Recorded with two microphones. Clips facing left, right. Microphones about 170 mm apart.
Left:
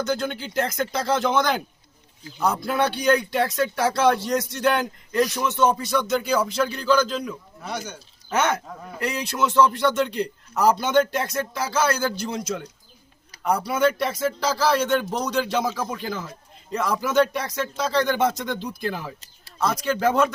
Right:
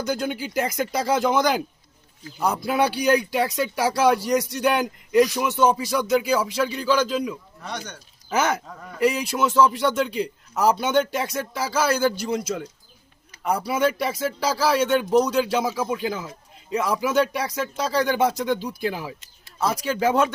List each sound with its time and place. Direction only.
0.0 s speech: 10° right (ahead or behind)
7.6 s a man's voice: 5° left (ahead or behind)